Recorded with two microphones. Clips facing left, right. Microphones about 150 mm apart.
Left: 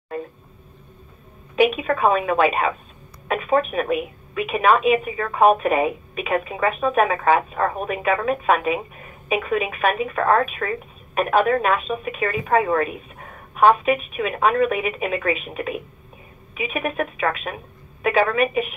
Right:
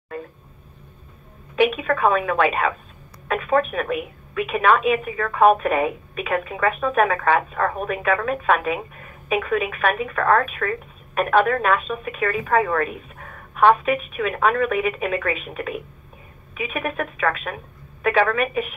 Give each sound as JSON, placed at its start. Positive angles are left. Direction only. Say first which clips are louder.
{"t": 1.6, "sound": "a woman's voice", "louder": "left 1 dB", "side_deg": 15}